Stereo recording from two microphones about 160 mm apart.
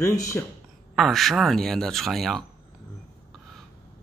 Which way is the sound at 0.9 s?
Centre (ahead or behind).